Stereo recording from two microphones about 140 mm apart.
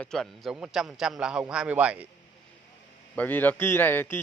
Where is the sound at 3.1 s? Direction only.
10° left (ahead or behind).